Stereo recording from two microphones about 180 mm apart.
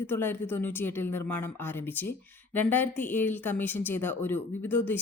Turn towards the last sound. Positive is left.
turn(degrees=10)  # may be behind; listen again after turning